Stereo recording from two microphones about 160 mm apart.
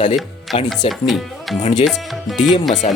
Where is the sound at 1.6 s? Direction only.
45° left (ahead or behind).